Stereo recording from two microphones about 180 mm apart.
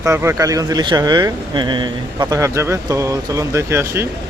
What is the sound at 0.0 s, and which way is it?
Speech, 15° right (ahead or behind).